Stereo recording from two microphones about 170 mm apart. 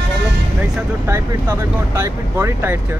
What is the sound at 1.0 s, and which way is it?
Speech, 15° right (ahead or behind).